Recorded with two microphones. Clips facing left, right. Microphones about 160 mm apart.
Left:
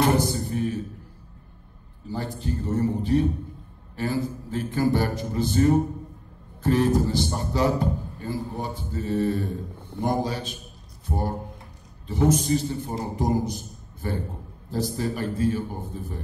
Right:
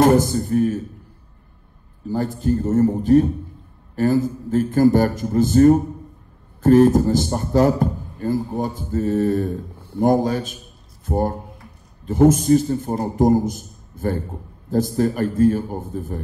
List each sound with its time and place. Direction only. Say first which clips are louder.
0.0 s a man's voice: right 7 dB; 45° right (ahead or behind)
2.0 s a man's voice: right 9 dB; 45° right (ahead or behind)